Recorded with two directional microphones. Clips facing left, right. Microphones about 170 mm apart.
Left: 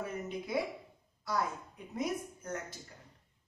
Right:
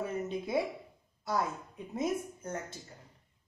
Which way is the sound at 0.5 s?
25° right (ahead or behind).